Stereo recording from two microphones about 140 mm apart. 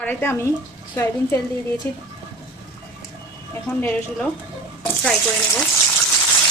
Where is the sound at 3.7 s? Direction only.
20° left (ahead or behind).